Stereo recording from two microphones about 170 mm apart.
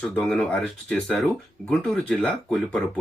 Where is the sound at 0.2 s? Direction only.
5° left (ahead or behind).